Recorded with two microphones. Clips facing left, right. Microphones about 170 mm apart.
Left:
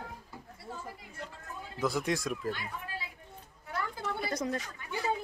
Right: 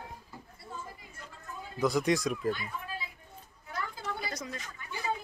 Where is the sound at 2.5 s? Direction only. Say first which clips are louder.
Right 3 dB; 80° left.